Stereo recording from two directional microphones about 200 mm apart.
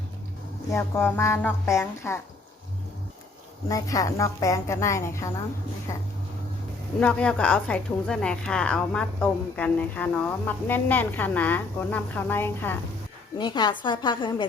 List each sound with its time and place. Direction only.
0.7 s a woman's voice: 10° left (ahead or behind)
3.7 s a woman's voice: 15° left (ahead or behind)
13.4 s a woman's voice: 20° left (ahead or behind)